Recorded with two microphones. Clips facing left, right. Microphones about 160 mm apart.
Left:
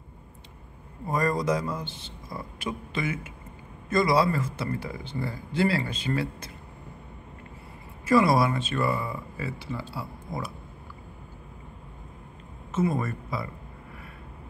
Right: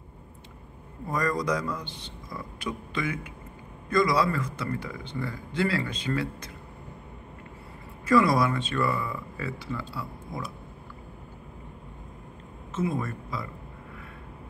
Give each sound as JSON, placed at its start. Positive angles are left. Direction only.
{"t": 1.0, "sound": "speech", "side_deg": 25}
{"t": 1.9, "sound": "speech", "side_deg": 5}
{"t": 2.2, "sound": "speech", "side_deg": 30}
{"t": 8.1, "sound": "speech", "side_deg": 30}
{"t": 12.7, "sound": "speech", "side_deg": 5}